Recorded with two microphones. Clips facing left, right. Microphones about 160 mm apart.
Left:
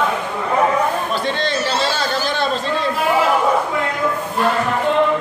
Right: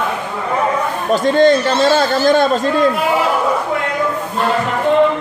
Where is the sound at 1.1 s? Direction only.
45° right (ahead or behind).